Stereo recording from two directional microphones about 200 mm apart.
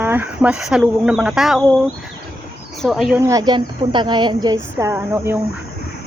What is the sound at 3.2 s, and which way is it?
A woman's voice, 20° right (ahead or behind).